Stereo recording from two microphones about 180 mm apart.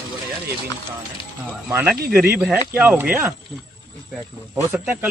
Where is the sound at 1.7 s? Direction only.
10° right (ahead or behind).